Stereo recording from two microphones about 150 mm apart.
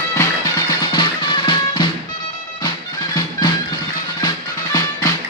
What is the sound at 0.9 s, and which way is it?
Music, 30° left (ahead or behind).